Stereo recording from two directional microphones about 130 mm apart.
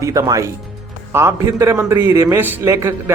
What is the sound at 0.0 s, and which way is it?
Speech, 25° right (ahead or behind).